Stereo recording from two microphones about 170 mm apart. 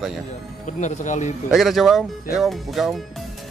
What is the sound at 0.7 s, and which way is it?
Speech, 45° left (ahead or behind).